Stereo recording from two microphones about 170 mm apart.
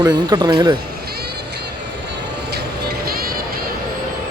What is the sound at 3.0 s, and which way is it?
Music, 60° right (ahead or behind).